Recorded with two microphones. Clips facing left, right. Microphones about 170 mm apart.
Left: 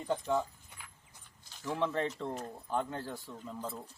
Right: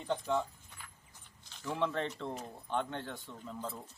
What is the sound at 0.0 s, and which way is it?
Keys jangling, 5° left (ahead or behind).